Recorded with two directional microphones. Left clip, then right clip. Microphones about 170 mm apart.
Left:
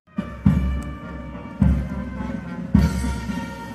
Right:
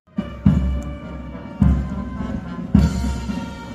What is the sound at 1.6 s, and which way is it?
Music, 20° left (ahead or behind).